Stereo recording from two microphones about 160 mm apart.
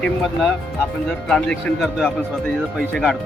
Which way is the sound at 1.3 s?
5° left (ahead or behind).